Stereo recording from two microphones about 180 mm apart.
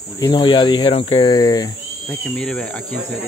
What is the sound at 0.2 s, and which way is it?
Speech, 25° left (ahead or behind).